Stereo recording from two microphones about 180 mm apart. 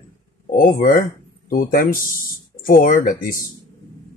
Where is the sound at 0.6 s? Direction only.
50° left (ahead or behind).